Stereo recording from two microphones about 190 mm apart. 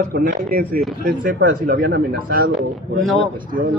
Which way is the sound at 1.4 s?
60° right (ahead or behind).